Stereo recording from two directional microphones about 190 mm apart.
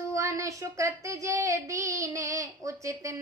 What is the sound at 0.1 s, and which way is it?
A woman's voice, 15° right (ahead or behind).